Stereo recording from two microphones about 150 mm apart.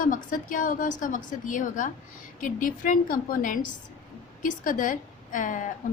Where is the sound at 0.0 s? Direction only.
60° left (ahead or behind).